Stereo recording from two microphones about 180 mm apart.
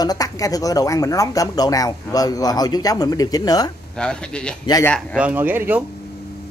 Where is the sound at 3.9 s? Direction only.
5° left (ahead or behind).